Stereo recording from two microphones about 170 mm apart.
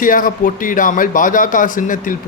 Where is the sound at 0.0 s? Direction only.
55° left (ahead or behind).